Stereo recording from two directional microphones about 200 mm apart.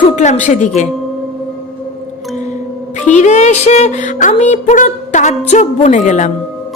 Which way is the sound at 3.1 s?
35° left (ahead or behind).